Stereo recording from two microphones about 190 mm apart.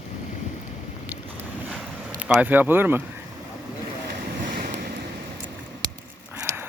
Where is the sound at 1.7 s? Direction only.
5° right (ahead or behind).